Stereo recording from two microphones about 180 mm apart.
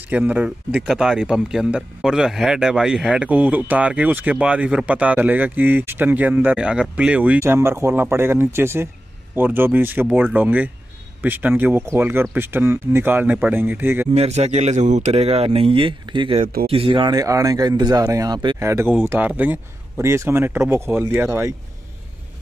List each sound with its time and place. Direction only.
0.1 s speech: 10° right (ahead or behind)
14.1 s a man's voice: 35° right (ahead or behind)
18.6 s speech: 15° right (ahead or behind)